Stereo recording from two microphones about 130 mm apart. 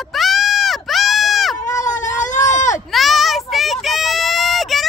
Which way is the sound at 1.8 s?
75° left (ahead or behind).